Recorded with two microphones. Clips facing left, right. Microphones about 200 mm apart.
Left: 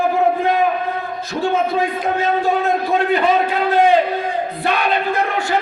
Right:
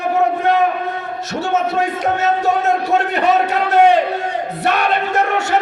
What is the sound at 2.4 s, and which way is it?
Speech, 75° right (ahead or behind).